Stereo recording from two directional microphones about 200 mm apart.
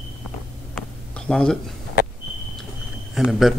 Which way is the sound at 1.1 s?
5° left (ahead or behind).